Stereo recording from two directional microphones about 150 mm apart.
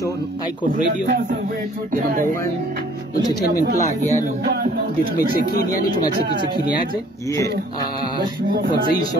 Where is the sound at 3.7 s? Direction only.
50° left (ahead or behind).